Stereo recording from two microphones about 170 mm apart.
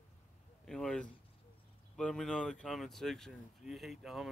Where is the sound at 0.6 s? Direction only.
5° left (ahead or behind).